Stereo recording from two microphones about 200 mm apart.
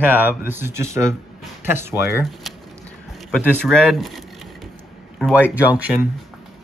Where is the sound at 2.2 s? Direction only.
Centre (ahead or behind).